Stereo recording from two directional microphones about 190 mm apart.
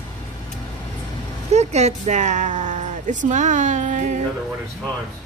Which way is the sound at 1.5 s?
35° right (ahead or behind).